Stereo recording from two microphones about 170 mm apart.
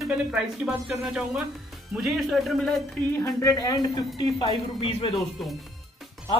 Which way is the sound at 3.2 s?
15° left (ahead or behind).